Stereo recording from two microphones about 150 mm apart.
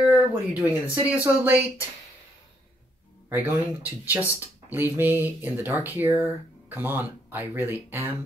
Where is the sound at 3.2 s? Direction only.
10° right (ahead or behind).